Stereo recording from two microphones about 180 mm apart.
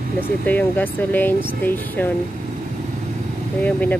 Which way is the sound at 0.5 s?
10° left (ahead or behind).